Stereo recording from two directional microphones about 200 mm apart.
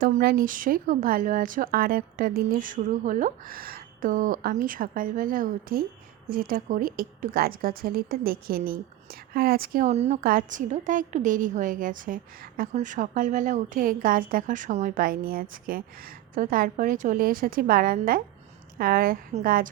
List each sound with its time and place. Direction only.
0.0 s a woman's voice: 50° right (ahead or behind)